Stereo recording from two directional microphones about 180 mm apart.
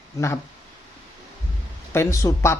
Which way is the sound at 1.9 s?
15° left (ahead or behind).